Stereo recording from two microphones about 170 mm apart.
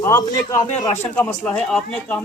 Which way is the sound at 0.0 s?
15° left (ahead or behind).